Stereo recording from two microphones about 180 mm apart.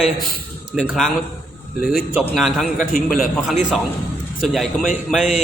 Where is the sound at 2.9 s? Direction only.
Centre (ahead or behind).